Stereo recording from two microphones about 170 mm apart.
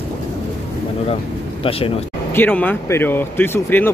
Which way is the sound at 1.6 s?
35° left (ahead or behind).